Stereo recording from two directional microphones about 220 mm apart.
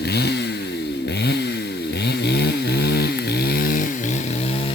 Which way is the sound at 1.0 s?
50° left (ahead or behind).